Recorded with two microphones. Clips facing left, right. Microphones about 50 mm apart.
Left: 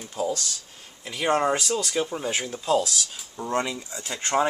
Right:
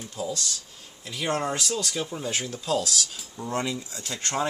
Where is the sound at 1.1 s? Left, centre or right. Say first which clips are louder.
Left 5 dB; left.